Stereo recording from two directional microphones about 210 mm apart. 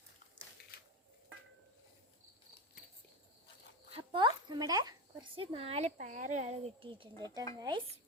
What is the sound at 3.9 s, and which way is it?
Zipper, 25° right (ahead or behind).